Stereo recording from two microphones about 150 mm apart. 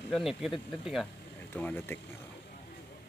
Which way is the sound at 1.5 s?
10° left (ahead or behind).